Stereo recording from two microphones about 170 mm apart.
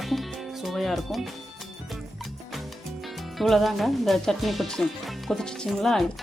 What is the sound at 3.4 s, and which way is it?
Speech, centre (ahead or behind).